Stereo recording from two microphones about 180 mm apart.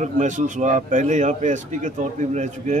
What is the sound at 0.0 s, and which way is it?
A man's voice, 45° right (ahead or behind).